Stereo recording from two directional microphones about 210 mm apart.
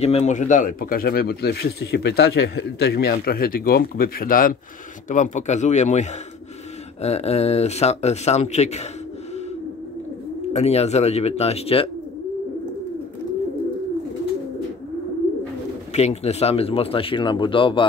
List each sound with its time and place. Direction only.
0.0 s speech: 30° left (ahead or behind)
10.5 s speech: 30° left (ahead or behind)
15.9 s speech: 30° left (ahead or behind)